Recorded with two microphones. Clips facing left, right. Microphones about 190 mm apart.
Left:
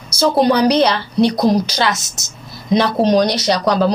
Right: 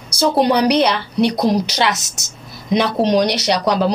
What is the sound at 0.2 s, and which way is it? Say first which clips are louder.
A woman's voice: left 1 dB; 15° right (ahead or behind).